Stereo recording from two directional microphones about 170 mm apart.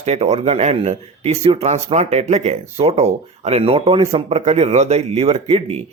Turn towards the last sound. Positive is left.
turn(degrees=-40)  # may be behind; listen again after turning